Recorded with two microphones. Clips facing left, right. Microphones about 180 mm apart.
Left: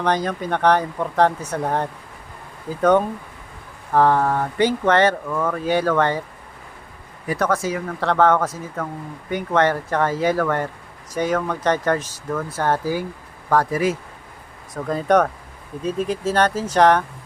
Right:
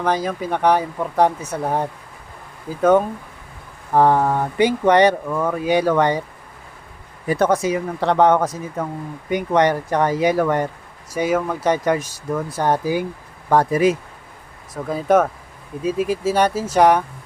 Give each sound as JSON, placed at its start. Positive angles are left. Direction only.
{"t": 0.0, "sound": "speech", "side_deg": -5}
{"t": 7.3, "sound": "speech", "side_deg": -25}
{"t": 14.7, "sound": "speech", "side_deg": 0}